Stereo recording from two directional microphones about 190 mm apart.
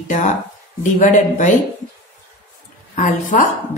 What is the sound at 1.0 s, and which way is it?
Speech, 40° left (ahead or behind).